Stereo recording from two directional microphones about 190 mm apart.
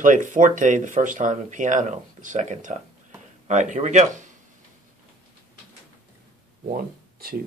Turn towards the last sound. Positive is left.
turn(degrees=-50)  # may be behind; listen again after turning